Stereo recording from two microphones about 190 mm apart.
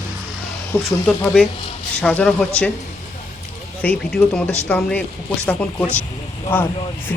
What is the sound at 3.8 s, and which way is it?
Speech, 5° left (ahead or behind).